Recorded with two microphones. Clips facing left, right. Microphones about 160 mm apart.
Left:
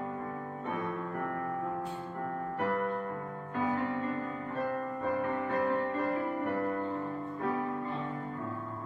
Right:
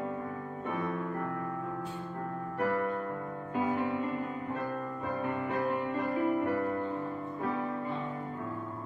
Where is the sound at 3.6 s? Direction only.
15° right (ahead or behind).